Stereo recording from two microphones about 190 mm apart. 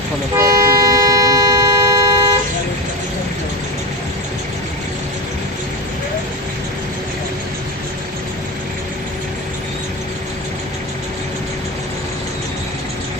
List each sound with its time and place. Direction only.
0.3 s toot: 20° right (ahead or behind)